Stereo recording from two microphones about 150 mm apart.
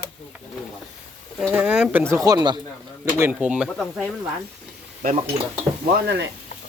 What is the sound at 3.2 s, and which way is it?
Speech, 5° right (ahead or behind).